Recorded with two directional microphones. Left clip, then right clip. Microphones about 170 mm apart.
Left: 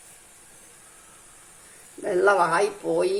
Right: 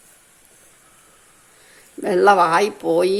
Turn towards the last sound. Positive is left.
turn(degrees=-50)  # may be behind; listen again after turning